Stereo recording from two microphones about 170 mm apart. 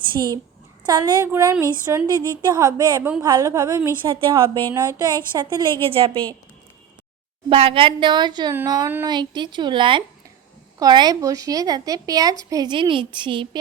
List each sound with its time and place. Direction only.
0.1 s a woman's voice: 25° right (ahead or behind)
4.0 s a woman's voice: 30° right (ahead or behind)
7.5 s speech: 35° right (ahead or behind)